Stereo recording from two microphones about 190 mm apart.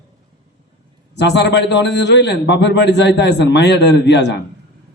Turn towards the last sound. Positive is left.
turn(degrees=65)  # may be behind; listen again after turning